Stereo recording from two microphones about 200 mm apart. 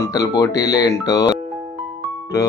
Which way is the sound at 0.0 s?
15° left (ahead or behind).